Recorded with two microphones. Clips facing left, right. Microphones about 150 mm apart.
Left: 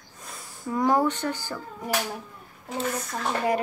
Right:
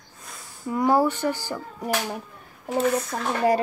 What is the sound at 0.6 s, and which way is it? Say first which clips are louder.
Speech: right 2 dB; 5° right (ahead or behind).